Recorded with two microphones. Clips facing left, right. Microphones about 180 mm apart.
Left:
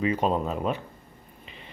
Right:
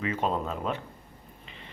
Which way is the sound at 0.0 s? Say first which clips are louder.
Left 4 dB; 15° left (ahead or behind).